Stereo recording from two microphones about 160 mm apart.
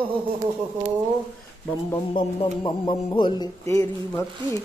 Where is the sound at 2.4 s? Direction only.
30° left (ahead or behind).